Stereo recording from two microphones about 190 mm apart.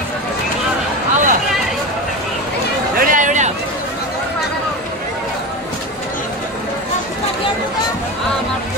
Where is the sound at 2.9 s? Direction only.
45° right (ahead or behind).